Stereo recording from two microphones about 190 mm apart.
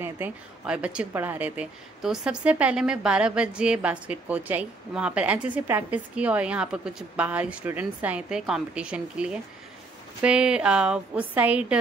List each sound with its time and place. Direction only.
0.0 s a woman's voice: 10° right (ahead or behind)